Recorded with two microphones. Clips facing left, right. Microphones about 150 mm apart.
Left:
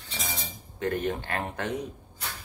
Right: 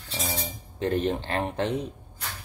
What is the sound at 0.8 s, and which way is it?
Speech, 25° right (ahead or behind).